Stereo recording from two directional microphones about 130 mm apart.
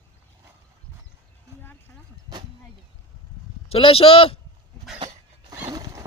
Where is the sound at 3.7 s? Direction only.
45° left (ahead or behind).